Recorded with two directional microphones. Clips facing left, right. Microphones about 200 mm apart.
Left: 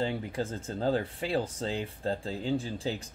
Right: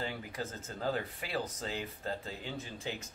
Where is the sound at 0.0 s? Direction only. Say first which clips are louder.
Left 7 dB; 30° left (ahead or behind).